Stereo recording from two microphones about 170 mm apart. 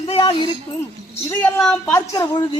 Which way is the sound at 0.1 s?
30° left (ahead or behind).